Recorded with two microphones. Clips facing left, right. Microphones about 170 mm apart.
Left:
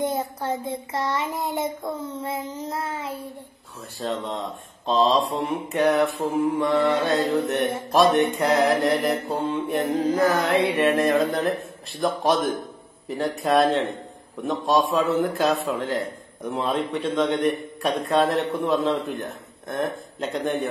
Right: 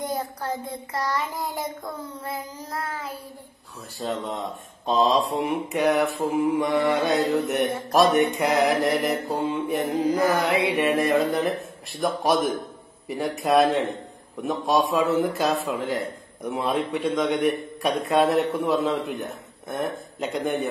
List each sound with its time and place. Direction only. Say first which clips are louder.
0.0 s a child's voice: left 3 dB; 25° left (ahead or behind)
4.0 s mantra: left 1 dB; centre (ahead or behind)